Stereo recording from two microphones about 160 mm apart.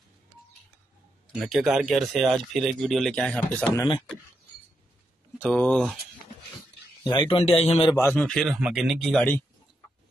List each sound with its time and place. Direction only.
1.3 s speech: centre (ahead or behind)
3.6 s speech: 25° left (ahead or behind)
5.4 s speech: 10° left (ahead or behind)
7.1 s a man's voice: 30° left (ahead or behind)
7.9 s speech: 15° left (ahead or behind)